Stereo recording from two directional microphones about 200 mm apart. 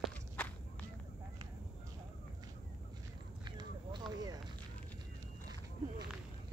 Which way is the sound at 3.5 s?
20° right (ahead or behind).